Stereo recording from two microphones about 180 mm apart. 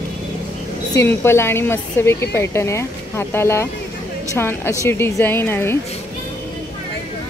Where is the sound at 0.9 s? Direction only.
15° left (ahead or behind).